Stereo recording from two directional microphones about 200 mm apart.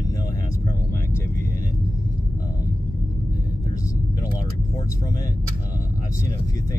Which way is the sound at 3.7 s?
15° left (ahead or behind).